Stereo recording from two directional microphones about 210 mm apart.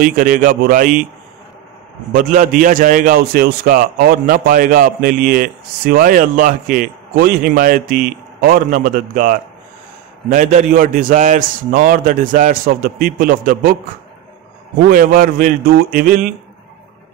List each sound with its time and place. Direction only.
0.0 s a man's voice: 40° right (ahead or behind)
2.1 s a man's voice: 40° right (ahead or behind)
14.9 s a man's voice: 40° right (ahead or behind)